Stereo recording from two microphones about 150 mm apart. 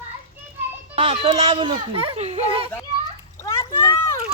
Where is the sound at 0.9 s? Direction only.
40° right (ahead or behind).